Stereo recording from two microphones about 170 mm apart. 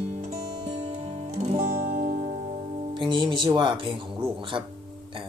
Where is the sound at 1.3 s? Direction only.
45° right (ahead or behind).